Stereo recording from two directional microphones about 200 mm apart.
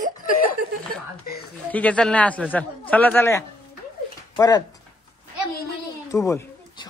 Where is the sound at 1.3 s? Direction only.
50° left (ahead or behind).